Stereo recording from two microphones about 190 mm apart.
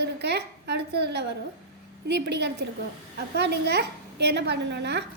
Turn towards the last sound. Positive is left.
turn(degrees=-65)  # may be behind; listen again after turning